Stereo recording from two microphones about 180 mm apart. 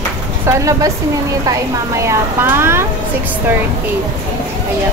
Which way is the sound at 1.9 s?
15° right (ahead or behind).